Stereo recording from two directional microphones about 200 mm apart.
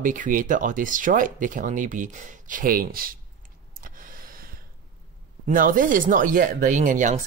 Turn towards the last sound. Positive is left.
turn(degrees=-40)  # may be behind; listen again after turning